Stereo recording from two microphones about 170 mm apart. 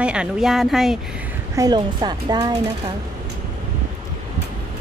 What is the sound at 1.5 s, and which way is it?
Speech, 25° right (ahead or behind).